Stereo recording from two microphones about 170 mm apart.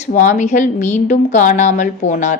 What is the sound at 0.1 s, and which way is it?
A woman's voice, 45° left (ahead or behind).